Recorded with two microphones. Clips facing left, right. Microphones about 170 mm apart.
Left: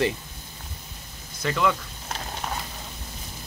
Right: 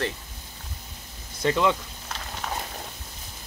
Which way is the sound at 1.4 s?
20° right (ahead or behind).